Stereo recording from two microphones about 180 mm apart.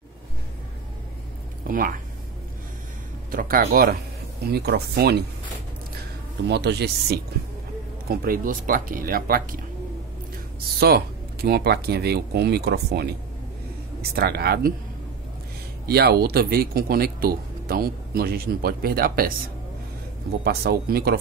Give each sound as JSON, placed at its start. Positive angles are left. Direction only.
{"t": 1.7, "sound": "speech", "side_deg": -50}
{"t": 3.3, "sound": "speech", "side_deg": -50}
{"t": 6.4, "sound": "speech", "side_deg": -65}
{"t": 8.1, "sound": "speech", "side_deg": -55}
{"t": 10.8, "sound": "speech", "side_deg": -60}
{"t": 14.1, "sound": "speech", "side_deg": -60}
{"t": 15.9, "sound": "speech", "side_deg": -60}
{"t": 20.4, "sound": "speech", "side_deg": -60}